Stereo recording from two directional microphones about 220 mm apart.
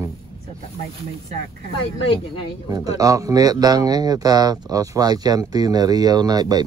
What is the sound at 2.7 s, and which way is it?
Speech, 15° right (ahead or behind).